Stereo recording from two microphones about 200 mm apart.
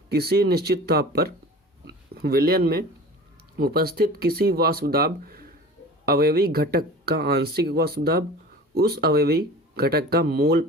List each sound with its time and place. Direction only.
0.1 s speech: 50° right (ahead or behind)